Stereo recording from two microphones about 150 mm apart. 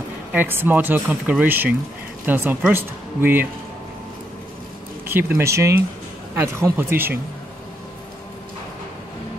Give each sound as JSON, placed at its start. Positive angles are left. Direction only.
{"t": 0.3, "sound": "speech", "side_deg": -15}
{"t": 5.0, "sound": "speech", "side_deg": -15}